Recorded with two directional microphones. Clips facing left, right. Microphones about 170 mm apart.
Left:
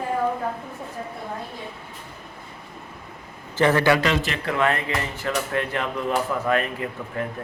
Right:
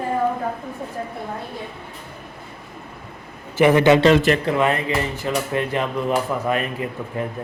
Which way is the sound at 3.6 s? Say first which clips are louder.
Right 5 dB; 15° right (ahead or behind).